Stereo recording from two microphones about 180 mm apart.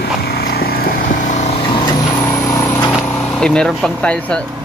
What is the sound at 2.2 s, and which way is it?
Vehicle, 15° left (ahead or behind).